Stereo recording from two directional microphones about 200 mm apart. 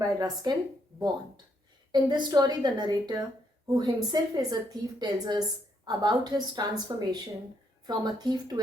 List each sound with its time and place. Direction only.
0.0 s a woman's voice: 20° right (ahead or behind)
1.9 s a woman's voice: 20° right (ahead or behind)